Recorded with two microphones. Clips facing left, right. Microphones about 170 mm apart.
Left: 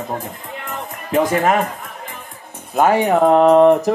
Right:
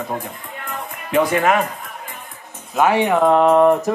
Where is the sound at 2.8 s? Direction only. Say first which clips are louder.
Left 2 dB; 40° left (ahead or behind).